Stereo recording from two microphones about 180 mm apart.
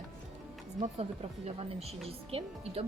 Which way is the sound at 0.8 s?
35° right (ahead or behind).